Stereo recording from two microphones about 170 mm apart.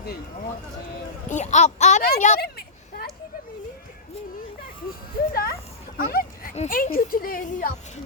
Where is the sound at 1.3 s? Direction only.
45° left (ahead or behind).